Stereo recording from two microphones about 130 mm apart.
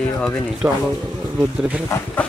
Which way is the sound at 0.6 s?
20° right (ahead or behind).